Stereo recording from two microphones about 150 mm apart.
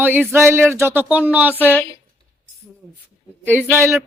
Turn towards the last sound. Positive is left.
turn(degrees=-20)  # may be behind; listen again after turning